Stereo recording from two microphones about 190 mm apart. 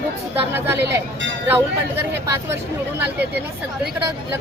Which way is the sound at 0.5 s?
10° right (ahead or behind).